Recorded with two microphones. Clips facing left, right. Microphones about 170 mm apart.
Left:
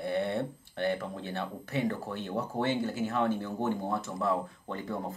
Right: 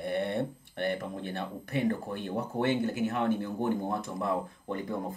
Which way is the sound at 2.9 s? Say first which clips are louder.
Even; 20° right (ahead or behind).